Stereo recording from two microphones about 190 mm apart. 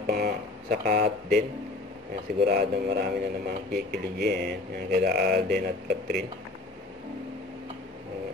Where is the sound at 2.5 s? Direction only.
55° right (ahead or behind).